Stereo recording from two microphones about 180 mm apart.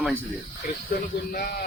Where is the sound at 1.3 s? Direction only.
55° left (ahead or behind).